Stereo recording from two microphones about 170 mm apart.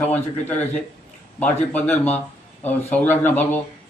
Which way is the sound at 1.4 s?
10° left (ahead or behind).